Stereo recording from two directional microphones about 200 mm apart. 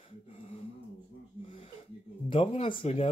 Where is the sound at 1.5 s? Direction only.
25° left (ahead or behind).